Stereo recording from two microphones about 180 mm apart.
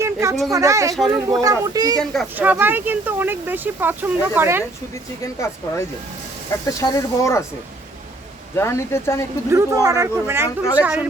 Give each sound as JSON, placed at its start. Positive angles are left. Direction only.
{"t": 0.0, "sound": "a sound", "side_deg": -15}
{"t": 0.5, "sound": "speech", "side_deg": -15}
{"t": 2.3, "sound": "speech", "side_deg": -10}
{"t": 5.2, "sound": "speech", "side_deg": 15}
{"t": 8.5, "sound": "speech", "side_deg": 15}
{"t": 9.5, "sound": "speech", "side_deg": -15}